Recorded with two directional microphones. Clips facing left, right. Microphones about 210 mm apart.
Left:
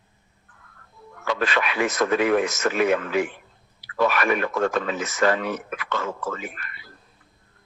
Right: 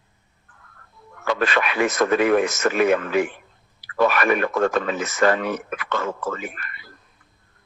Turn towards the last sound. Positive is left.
turn(degrees=-55)  # may be behind; listen again after turning